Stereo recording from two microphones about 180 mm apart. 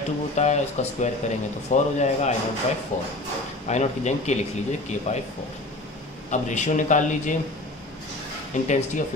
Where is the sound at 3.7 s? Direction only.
40° left (ahead or behind).